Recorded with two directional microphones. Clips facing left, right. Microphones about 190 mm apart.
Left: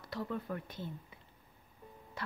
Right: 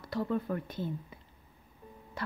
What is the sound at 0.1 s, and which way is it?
Speech, 45° right (ahead or behind).